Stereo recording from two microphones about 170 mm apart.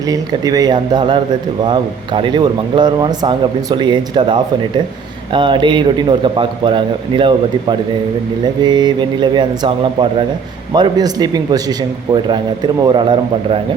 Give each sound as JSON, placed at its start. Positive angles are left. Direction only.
{"t": 0.1, "sound": "a man's voice", "side_deg": -20}